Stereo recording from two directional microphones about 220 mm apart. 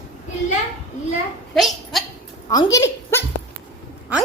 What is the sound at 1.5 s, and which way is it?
Speech, centre (ahead or behind).